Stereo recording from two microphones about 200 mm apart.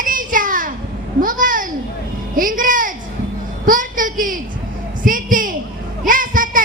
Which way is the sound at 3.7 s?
45° right (ahead or behind).